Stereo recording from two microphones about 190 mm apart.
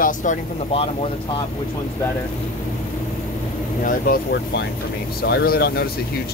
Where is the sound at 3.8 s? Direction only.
50° left (ahead or behind).